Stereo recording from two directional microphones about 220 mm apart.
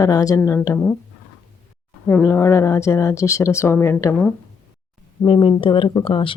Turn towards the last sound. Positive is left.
turn(degrees=25)  # may be behind; listen again after turning